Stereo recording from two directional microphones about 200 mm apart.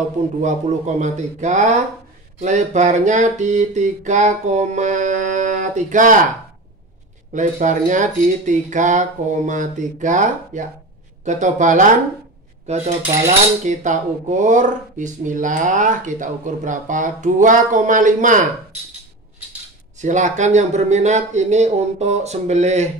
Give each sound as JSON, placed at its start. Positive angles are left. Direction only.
{"t": 0.4, "sound": "speech", "side_deg": -35}
{"t": 7.3, "sound": "speech", "side_deg": -40}
{"t": 20.0, "sound": "speech", "side_deg": -35}